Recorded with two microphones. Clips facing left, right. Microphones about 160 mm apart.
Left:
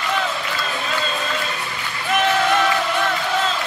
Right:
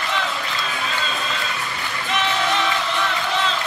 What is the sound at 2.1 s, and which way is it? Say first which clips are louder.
Music: left 5 dB; 50° left (ahead or behind).